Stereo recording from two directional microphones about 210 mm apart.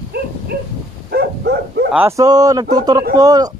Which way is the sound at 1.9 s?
15° right (ahead or behind).